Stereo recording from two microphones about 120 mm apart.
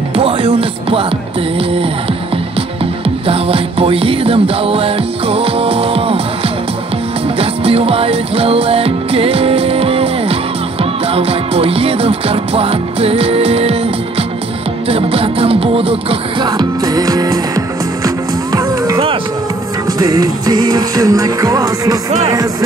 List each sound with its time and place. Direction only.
0.1 s music: 50° right (ahead or behind)
3.3 s music: 55° right (ahead or behind)
7.3 s music: 55° right (ahead or behind)
16.4 s music: 35° right (ahead or behind)
20.0 s music: 30° right (ahead or behind)
22.3 s speech: 30° right (ahead or behind)